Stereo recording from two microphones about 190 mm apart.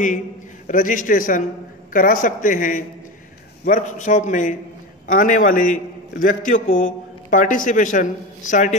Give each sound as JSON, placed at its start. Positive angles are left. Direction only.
{"t": 0.7, "sound": "a man's voice", "side_deg": 45}